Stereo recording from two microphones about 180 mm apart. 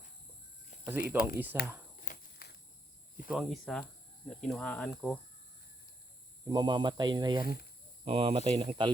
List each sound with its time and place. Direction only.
1.1 s speech: 10° right (ahead or behind)
2.0 s walk: 60° left (ahead or behind)
3.2 s speech: centre (ahead or behind)
6.4 s speech: 20° right (ahead or behind)